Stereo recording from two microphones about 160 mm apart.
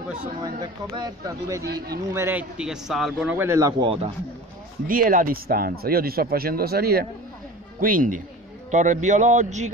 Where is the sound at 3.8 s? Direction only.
35° right (ahead or behind).